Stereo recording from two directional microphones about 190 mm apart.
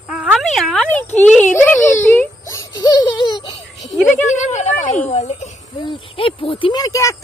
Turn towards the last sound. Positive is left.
turn(degrees=15)  # may be behind; listen again after turning